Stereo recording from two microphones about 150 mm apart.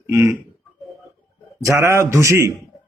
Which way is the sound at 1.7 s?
15° right (ahead or behind).